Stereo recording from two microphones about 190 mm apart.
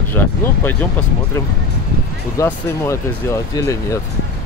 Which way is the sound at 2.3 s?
15° left (ahead or behind).